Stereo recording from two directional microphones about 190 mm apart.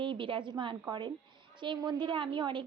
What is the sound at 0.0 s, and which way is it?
A woman's voice, 25° right (ahead or behind).